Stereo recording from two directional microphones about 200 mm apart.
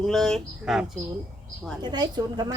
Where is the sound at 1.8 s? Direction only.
20° right (ahead or behind).